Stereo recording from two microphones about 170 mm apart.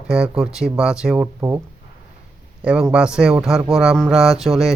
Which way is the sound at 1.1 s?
15° right (ahead or behind).